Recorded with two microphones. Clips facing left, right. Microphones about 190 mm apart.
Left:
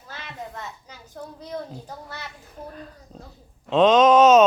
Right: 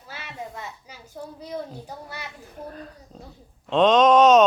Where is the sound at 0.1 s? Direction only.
10° right (ahead or behind).